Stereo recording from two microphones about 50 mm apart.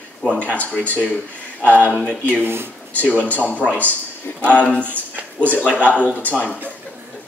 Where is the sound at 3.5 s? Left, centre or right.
Left.